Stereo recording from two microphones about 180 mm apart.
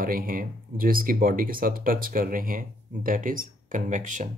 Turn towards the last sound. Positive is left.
turn(degrees=-45)  # may be behind; listen again after turning